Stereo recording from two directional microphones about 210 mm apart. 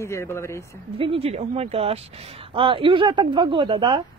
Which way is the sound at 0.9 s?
25° right (ahead or behind).